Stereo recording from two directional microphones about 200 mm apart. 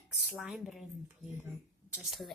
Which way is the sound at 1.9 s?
Centre (ahead or behind).